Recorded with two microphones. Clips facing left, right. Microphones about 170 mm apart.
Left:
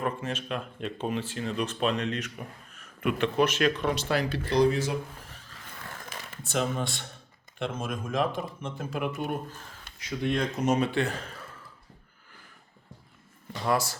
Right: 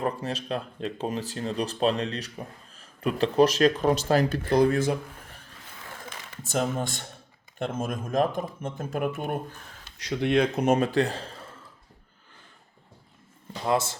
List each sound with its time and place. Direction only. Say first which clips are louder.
0.0 s speech: right 2 dB; 35° right (ahead or behind); by 4.9 s 50° right (ahead or behind)
6.5 s speech: right 2 dB; 45° right (ahead or behind)
10.0 s speech: right 5 dB; 70° right (ahead or behind)
10.6 s speech: right 3 dB; 50° right (ahead or behind); by 11.3 s 30° right (ahead or behind)
13.7 s speech: right 2 dB; 20° right (ahead or behind)